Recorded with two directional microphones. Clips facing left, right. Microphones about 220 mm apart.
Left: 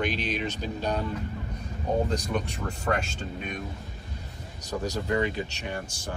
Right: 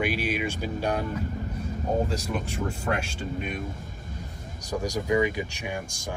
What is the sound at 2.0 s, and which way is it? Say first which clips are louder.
Speech: left 1 dB; 5° right (ahead or behind).